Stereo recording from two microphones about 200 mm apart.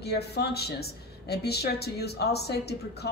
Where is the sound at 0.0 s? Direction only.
55° left (ahead or behind).